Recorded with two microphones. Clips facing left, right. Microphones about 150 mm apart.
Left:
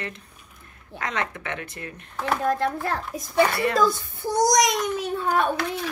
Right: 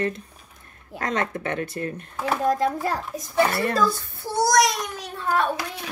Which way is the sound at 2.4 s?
10° right (ahead or behind).